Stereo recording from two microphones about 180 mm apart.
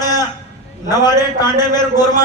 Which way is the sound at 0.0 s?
20° left (ahead or behind).